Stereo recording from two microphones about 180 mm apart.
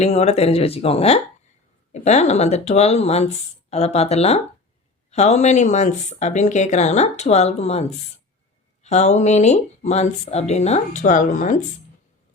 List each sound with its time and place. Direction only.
0.0 s speech: 35° left (ahead or behind)